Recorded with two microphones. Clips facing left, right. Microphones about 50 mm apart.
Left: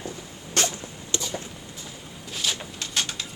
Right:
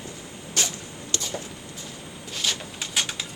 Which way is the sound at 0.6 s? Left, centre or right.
Left.